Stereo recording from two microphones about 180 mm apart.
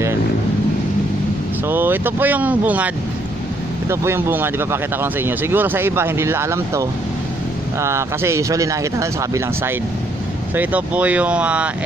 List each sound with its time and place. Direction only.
1.7 s speech: 10° right (ahead or behind)
3.9 s speech: 15° right (ahead or behind)